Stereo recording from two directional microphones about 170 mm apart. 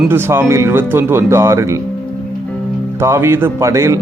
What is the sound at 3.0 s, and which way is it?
Speech, 15° right (ahead or behind).